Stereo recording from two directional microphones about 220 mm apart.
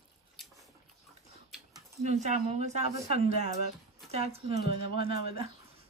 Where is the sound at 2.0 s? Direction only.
30° right (ahead or behind).